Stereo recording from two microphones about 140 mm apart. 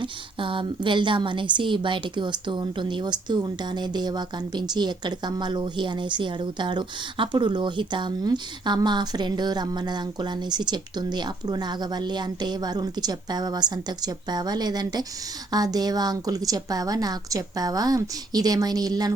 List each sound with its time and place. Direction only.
0.0 s a woman's voice: 40° right (ahead or behind)